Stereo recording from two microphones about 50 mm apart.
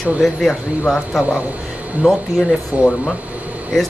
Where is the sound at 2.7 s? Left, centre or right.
Right.